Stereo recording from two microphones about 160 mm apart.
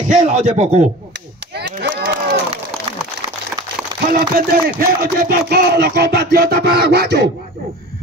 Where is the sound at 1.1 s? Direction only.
90° right.